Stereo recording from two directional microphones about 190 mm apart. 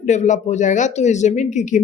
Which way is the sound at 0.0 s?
40° left (ahead or behind).